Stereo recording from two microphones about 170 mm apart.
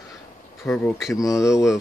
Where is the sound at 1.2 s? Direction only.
20° left (ahead or behind).